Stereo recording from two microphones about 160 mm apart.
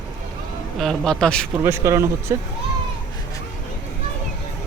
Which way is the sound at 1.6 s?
15° right (ahead or behind).